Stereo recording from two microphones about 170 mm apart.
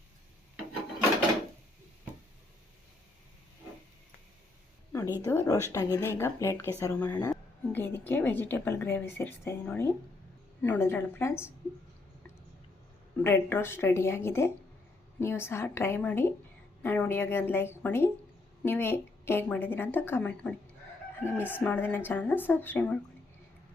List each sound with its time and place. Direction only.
4.9 s a sound: 15° left (ahead or behind)
5.2 s a woman's voice: 20° left (ahead or behind)
13.2 s a woman's voice: 15° left (ahead or behind)